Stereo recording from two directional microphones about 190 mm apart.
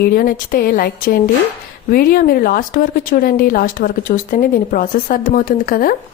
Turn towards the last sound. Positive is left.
turn(degrees=50)  # may be behind; listen again after turning